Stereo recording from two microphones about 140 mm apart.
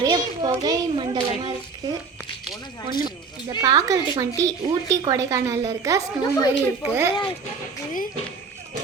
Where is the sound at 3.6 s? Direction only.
25° right (ahead or behind).